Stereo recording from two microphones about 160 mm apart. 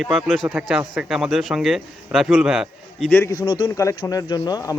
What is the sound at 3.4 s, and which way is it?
Speech, 25° left (ahead or behind).